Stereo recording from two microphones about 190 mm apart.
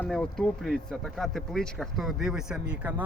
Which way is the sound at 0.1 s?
5° left (ahead or behind).